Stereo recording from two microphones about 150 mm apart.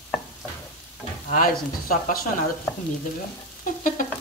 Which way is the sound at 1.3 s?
70° left (ahead or behind).